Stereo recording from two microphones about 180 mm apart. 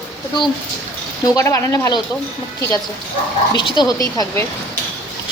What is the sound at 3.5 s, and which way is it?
Speech, 25° left (ahead or behind).